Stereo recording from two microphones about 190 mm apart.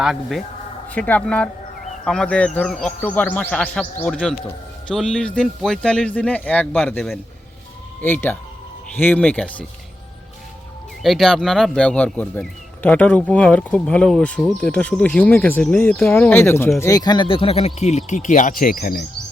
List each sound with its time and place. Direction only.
0.0 s a man's voice: centre (ahead or behind)
11.0 s speech: centre (ahead or behind); by 19.0 s 50° left (ahead or behind)